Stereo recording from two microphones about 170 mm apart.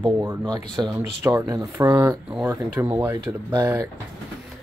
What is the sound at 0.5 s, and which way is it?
Speech, 25° right (ahead or behind).